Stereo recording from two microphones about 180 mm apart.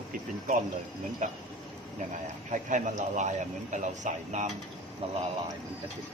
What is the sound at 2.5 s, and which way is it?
A man's voice, 45° right (ahead or behind).